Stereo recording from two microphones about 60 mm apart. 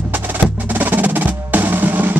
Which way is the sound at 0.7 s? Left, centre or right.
Right.